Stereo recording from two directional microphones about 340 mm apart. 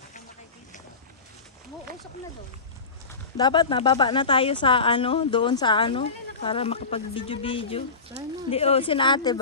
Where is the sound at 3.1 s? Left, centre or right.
Centre.